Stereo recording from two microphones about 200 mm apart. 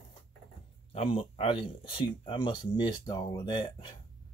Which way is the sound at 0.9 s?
30° left (ahead or behind).